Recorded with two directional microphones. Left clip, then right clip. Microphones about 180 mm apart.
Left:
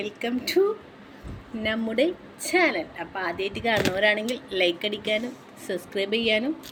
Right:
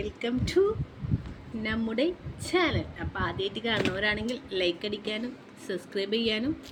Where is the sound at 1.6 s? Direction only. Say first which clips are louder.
Left 5 dB; 15° right (ahead or behind).